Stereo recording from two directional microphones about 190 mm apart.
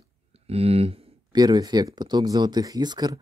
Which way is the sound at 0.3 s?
30° right (ahead or behind).